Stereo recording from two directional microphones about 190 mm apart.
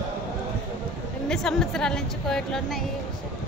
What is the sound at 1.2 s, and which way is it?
A woman's voice, centre (ahead or behind).